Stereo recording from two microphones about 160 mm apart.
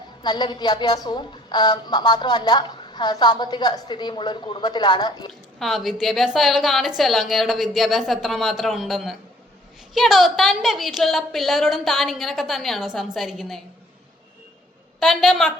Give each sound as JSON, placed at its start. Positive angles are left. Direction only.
{"t": 0.2, "sound": "a woman's voice", "side_deg": 30}
{"t": 5.3, "sound": "a woman's voice", "side_deg": 0}
{"t": 14.9, "sound": "a woman's voice", "side_deg": 0}